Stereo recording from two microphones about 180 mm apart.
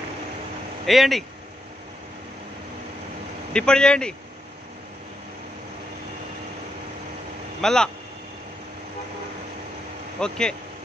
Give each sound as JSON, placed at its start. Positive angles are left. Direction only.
{"t": 0.8, "sound": "speech", "side_deg": 0}
{"t": 3.5, "sound": "speech", "side_deg": 5}
{"t": 7.6, "sound": "speech", "side_deg": 5}
{"t": 10.2, "sound": "speech", "side_deg": 5}